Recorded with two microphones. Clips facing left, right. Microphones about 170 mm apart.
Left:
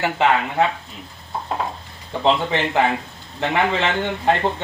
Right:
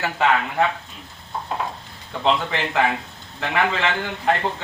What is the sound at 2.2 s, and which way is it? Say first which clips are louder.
Speech: left 3 dB; 25° left (ahead or behind).